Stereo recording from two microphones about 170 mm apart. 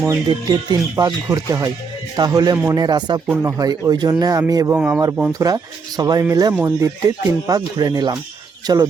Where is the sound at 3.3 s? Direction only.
15° right (ahead or behind).